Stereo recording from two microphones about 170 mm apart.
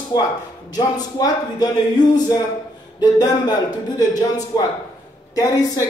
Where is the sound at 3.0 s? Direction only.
25° left (ahead or behind).